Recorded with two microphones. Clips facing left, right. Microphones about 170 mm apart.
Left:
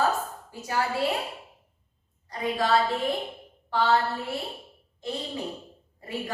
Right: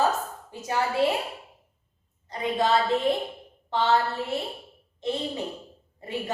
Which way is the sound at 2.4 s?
20° right (ahead or behind).